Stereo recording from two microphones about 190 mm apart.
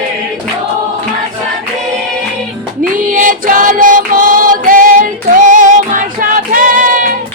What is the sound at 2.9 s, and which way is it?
Music, 45° right (ahead or behind).